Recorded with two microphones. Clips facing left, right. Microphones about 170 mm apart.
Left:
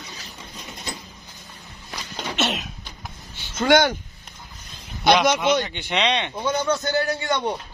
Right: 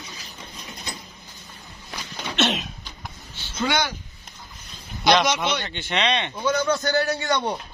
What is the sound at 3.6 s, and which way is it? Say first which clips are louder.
Speech: left 7 dB; 50° left (ahead or behind).